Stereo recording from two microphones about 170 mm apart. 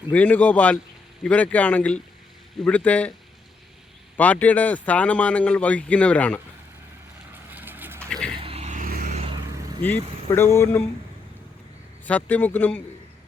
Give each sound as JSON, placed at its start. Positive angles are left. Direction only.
{"t": 0.1, "sound": "speech", "side_deg": 10}
{"t": 4.2, "sound": "speech", "side_deg": 10}
{"t": 7.5, "sound": "vehicle", "side_deg": -10}
{"t": 8.4, "sound": "vehicle", "side_deg": -35}
{"t": 9.8, "sound": "speech", "side_deg": 10}
{"t": 12.0, "sound": "speech", "side_deg": 10}